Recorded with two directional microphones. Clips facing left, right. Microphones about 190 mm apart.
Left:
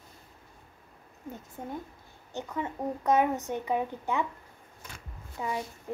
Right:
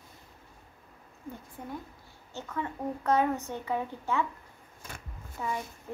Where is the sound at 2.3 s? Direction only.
15° left (ahead or behind).